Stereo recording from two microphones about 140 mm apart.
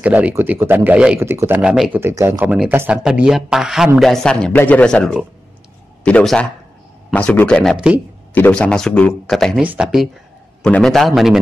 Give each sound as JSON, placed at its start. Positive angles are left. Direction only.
{"t": 0.0, "sound": "speech", "side_deg": -10}
{"t": 7.7, "sound": "speech", "side_deg": -5}
{"t": 8.4, "sound": "speech", "side_deg": 10}
{"t": 9.6, "sound": "speech", "side_deg": -5}